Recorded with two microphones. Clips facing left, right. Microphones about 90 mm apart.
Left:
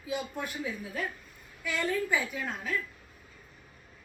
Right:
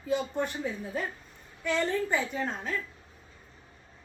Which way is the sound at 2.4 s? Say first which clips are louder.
Right 4 dB; 30° right (ahead or behind).